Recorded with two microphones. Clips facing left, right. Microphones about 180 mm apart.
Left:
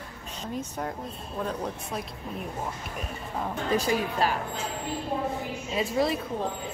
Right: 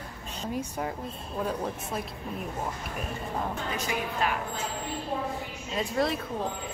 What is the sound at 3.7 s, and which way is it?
Speech, 35° left (ahead or behind).